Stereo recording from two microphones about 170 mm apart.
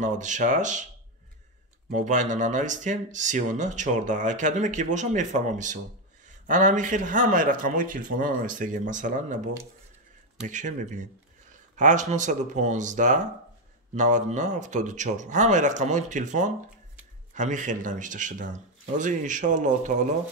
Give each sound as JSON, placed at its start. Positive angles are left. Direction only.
{"t": 0.0, "sound": "speech", "side_deg": -45}
{"t": 1.9, "sound": "speech", "side_deg": -45}